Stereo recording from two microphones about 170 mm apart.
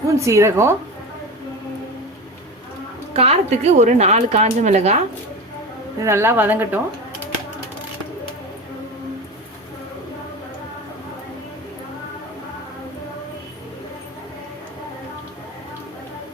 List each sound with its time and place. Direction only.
0.2 s a woman's voice: 15° right (ahead or behind)
3.1 s a woman's voice: 35° right (ahead or behind)
6.0 s a woman's voice: 15° right (ahead or behind)